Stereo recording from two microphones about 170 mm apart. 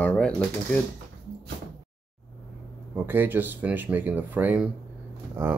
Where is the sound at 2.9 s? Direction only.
10° right (ahead or behind).